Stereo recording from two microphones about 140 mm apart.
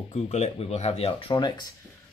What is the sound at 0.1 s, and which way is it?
Speech, 50° left (ahead or behind).